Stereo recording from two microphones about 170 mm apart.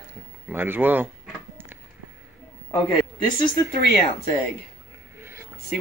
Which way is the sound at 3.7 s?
60° left (ahead or behind).